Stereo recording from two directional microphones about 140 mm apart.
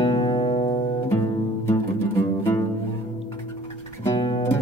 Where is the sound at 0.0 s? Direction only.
30° left (ahead or behind).